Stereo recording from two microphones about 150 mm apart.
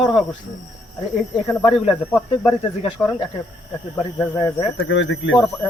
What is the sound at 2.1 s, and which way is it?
Speech, 5° left (ahead or behind).